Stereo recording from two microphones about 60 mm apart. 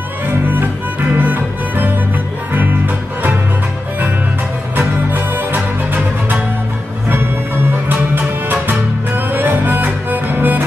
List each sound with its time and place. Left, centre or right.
0.3 s music: right
4.7 s music: right
7.9 s music: right